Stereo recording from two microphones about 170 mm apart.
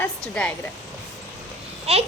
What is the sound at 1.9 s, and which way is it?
Speech, 40° right (ahead or behind).